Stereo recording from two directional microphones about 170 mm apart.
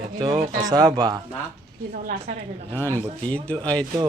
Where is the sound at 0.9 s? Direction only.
25° right (ahead or behind).